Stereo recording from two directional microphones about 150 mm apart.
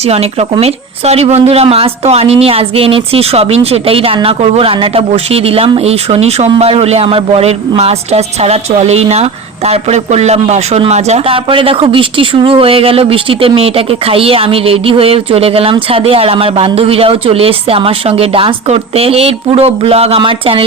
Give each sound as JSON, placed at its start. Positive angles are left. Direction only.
{"t": 0.0, "sound": "speech", "side_deg": -45}